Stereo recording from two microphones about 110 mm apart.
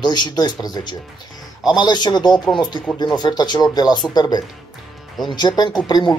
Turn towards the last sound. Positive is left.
turn(degrees=40)  # may be behind; listen again after turning